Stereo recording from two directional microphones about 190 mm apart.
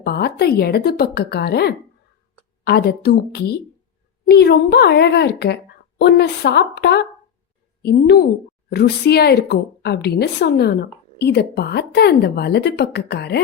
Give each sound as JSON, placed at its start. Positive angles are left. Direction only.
{"t": 0.0, "sound": "speech", "side_deg": 55}